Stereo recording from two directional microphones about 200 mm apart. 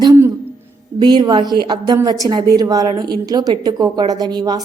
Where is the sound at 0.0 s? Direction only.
15° right (ahead or behind).